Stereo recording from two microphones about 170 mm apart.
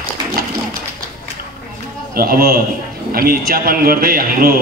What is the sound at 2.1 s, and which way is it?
A man's voice, 60° right (ahead or behind).